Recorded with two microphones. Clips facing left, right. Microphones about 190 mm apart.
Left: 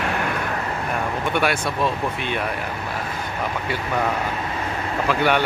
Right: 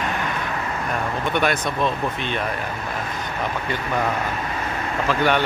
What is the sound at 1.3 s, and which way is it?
Speech, 10° left (ahead or behind).